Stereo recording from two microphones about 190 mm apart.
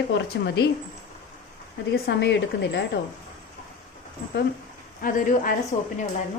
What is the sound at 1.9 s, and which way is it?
Speech, 60° left (ahead or behind).